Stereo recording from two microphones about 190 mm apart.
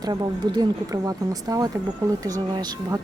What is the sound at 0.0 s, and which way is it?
Speech, 20° right (ahead or behind).